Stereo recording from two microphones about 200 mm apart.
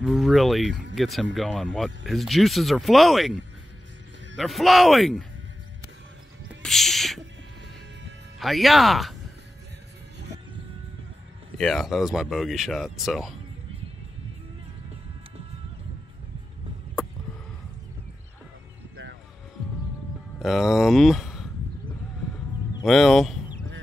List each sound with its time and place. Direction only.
0.0 s speech: centre (ahead or behind)
4.4 s speech: centre (ahead or behind)
6.6 s speech: centre (ahead or behind)
8.4 s speech: centre (ahead or behind)
11.5 s speech: centre (ahead or behind)
20.3 s speech: centre (ahead or behind)
22.8 s speech: centre (ahead or behind)